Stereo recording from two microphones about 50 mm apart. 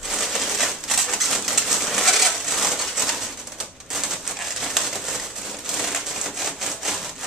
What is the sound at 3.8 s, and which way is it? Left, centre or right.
Crumpling, centre.